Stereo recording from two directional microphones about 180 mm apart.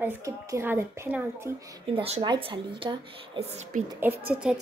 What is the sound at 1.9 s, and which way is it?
Speech, 30° right (ahead or behind).